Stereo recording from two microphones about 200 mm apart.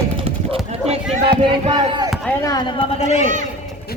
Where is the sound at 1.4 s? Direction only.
25° right (ahead or behind).